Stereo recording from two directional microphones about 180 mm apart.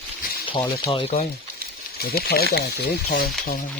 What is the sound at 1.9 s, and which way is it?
Speech, 60° left (ahead or behind).